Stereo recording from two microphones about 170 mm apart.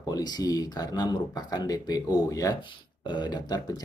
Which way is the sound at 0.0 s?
25° left (ahead or behind).